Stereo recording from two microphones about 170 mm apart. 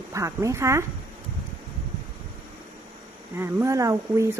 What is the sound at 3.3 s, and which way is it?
Speech, 15° right (ahead or behind).